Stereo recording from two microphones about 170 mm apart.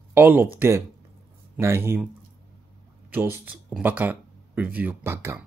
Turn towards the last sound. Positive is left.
turn(degrees=-15)  # may be behind; listen again after turning